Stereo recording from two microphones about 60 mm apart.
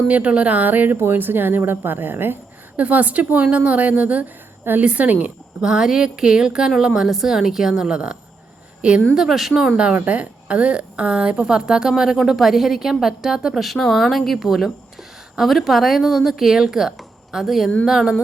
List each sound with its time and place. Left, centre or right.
0.1 s a woman's voice: right
2.8 s a woman's voice: right
5.6 s a woman's voice: centre
9.2 s a woman's voice: centre
9.7 s a woman's voice: centre